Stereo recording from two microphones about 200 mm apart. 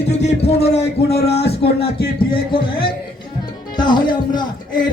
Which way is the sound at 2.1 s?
25° left (ahead or behind).